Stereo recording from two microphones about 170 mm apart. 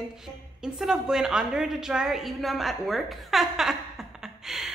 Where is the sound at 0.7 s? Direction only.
5° right (ahead or behind).